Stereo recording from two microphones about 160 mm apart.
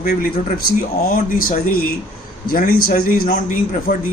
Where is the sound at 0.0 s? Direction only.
70° left (ahead or behind).